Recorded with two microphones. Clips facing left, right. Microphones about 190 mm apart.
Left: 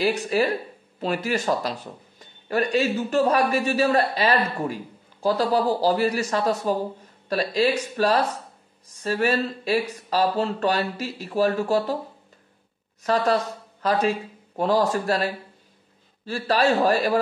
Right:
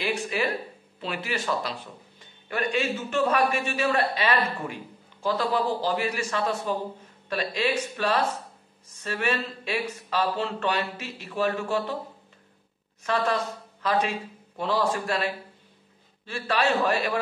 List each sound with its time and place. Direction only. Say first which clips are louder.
0.0 s a man's voice: left 6 dB; 40° left (ahead or behind)
13.0 s a man's voice: left 5 dB; 35° left (ahead or behind)
14.6 s a man's voice: left 5 dB; 40° left (ahead or behind)